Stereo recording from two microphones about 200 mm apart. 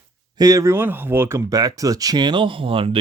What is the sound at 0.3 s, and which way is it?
Speech, 20° right (ahead or behind).